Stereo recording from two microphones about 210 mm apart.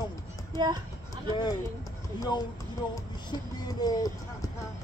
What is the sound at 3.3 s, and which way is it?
Music, 20° left (ahead or behind).